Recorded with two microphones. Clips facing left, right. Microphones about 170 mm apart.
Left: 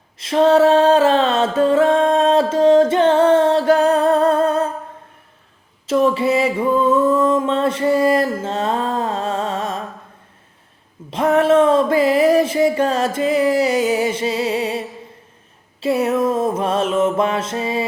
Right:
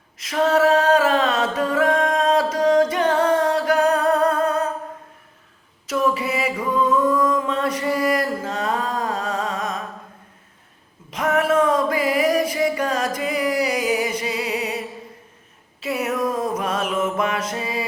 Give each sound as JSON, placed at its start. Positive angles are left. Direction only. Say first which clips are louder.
{"t": 0.2, "sound": "music", "louder": "left 5 dB", "side_deg": 30}
{"t": 5.8, "sound": "music", "louder": "left 6 dB", "side_deg": 25}
{"t": 11.1, "sound": "music", "louder": "left 5 dB", "side_deg": 30}
{"t": 15.8, "sound": "mantra", "louder": "left 6 dB", "side_deg": 30}